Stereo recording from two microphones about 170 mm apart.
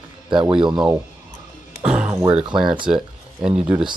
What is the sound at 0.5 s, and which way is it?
Speech, 30° right (ahead or behind).